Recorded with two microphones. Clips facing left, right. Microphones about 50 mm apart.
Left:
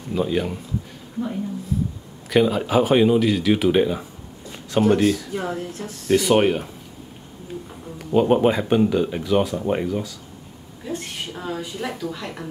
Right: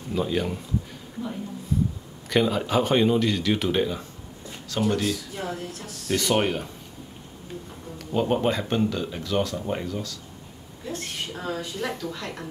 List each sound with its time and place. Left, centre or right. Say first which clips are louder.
0.1 s speech: left 3 dB; centre
2.2 s speech: left 4 dB; centre
4.6 s speech: left 7 dB; left
6.0 s speech: left 6 dB; centre
8.0 s speech: left 7 dB; centre
11.3 s speech: left 2 dB; centre